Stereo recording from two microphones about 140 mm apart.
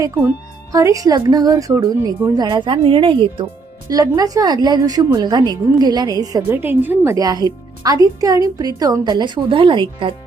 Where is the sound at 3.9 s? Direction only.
25° right (ahead or behind).